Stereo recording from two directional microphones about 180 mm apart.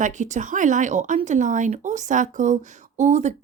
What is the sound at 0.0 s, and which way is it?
Speech, 45° right (ahead or behind).